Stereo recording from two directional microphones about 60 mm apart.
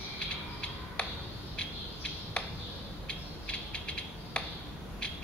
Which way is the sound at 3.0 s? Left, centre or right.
Centre.